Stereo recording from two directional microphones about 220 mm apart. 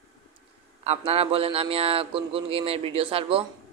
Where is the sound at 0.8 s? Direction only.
25° right (ahead or behind).